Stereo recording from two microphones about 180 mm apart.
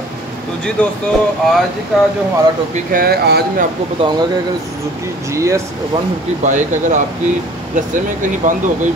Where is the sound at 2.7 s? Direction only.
55° right (ahead or behind).